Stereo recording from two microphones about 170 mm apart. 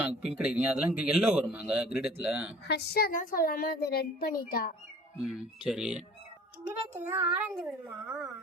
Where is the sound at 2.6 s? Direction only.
75° left (ahead or behind); by 4.7 s 60° left (ahead or behind).